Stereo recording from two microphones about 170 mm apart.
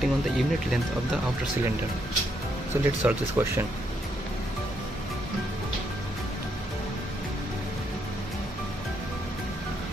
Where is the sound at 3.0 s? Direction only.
15° right (ahead or behind).